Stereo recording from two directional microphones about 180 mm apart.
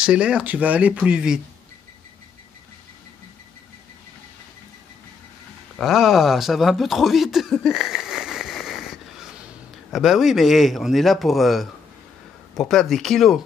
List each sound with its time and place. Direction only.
0.0 s speech: 5° right (ahead or behind)
5.8 s a man's voice: centre (ahead or behind)